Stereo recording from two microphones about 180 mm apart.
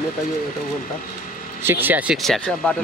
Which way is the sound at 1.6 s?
10° right (ahead or behind).